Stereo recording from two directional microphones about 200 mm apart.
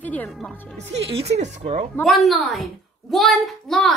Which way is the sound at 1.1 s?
30° right (ahead or behind).